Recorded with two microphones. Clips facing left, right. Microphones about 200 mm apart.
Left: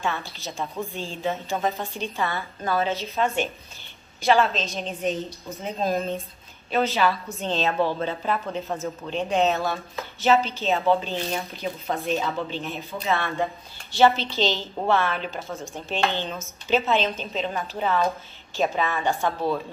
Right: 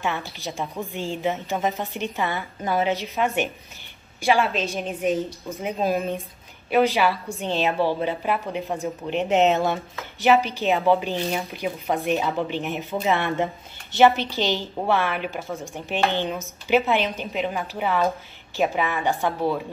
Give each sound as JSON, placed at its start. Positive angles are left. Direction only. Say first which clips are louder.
{"t": 0.0, "sound": "speech", "louder": "right 1 dB", "side_deg": -15}